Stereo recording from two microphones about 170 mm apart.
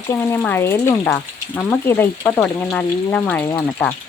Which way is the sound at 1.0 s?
5° left (ahead or behind).